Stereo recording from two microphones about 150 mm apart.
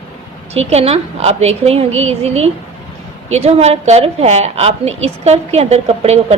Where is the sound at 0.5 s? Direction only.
45° right (ahead or behind).